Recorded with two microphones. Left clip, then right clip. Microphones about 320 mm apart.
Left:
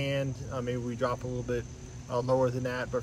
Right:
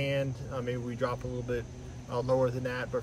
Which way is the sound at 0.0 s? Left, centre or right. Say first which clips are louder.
Right 1 dB; centre.